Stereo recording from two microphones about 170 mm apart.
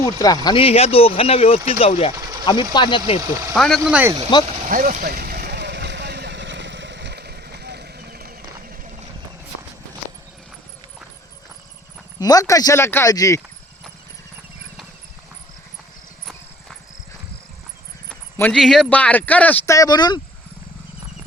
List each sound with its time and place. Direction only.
0.0 s speech: 20° left (ahead or behind)
2.1 s sewing machine: 25° right (ahead or behind)
2.7 s speech: 30° left (ahead or behind)
3.5 s speech: centre (ahead or behind)
3.8 s speech: 10° right (ahead or behind)
4.3 s speech: 25° left (ahead or behind)
4.7 s vehicle: 50° right (ahead or behind)
12.2 s speech: 20° left (ahead or behind)
18.1 s speech: 10° left (ahead or behind); by 20.2 s 25° left (ahead or behind)